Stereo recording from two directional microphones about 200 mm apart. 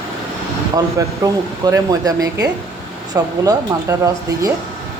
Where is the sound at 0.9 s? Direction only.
15° right (ahead or behind).